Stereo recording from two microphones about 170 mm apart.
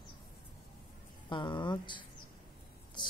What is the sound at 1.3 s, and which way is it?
Speech, 25° left (ahead or behind).